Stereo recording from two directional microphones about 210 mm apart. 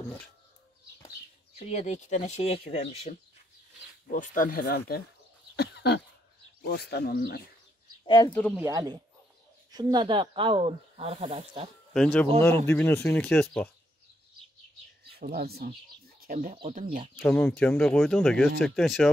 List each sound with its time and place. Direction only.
1.7 s speech: 30° left (ahead or behind)
5.6 s a sound: 50° left (ahead or behind)
6.6 s speech: 50° left (ahead or behind)
8.3 s speech: 5° left (ahead or behind)
8.5 s speech: 15° right (ahead or behind)
11.9 s speech: 5° left (ahead or behind)
15.0 s speech: 45° right (ahead or behind)
17.2 s speech: 10° left (ahead or behind)